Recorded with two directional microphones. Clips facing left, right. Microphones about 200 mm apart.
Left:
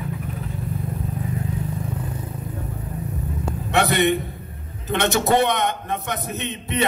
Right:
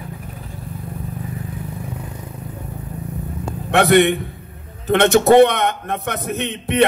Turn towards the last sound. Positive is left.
turn(degrees=-75)  # may be behind; listen again after turning